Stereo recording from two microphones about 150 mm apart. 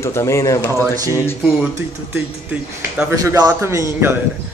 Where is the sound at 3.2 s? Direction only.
25° right (ahead or behind).